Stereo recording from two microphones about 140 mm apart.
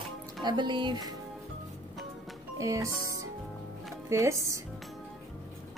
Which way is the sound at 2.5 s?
20° right (ahead or behind).